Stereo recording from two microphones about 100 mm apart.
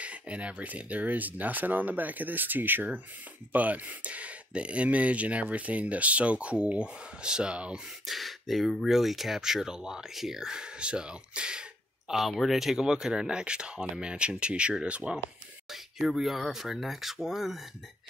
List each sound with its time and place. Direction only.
0.0 s speech: 10° right (ahead or behind)